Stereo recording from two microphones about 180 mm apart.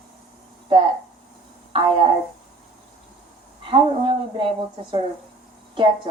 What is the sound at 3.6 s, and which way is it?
Speech, 30° right (ahead or behind).